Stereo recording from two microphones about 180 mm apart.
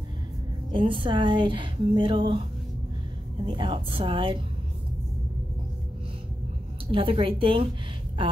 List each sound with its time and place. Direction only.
0.7 s a woman's voice: 30° right (ahead or behind)
3.4 s a woman's voice: 30° right (ahead or behind)
6.9 s a woman's voice: 30° right (ahead or behind)